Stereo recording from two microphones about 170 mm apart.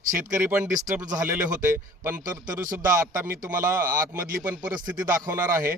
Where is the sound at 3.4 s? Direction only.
55° right (ahead or behind).